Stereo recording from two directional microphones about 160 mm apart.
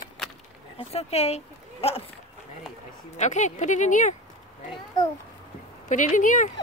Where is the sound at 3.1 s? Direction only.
45° left (ahead or behind).